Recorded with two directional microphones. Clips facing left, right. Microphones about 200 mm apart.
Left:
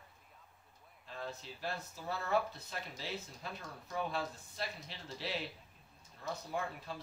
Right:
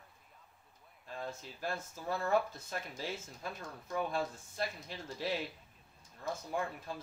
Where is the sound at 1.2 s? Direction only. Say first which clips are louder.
Right 1 dB; 45° right (ahead or behind).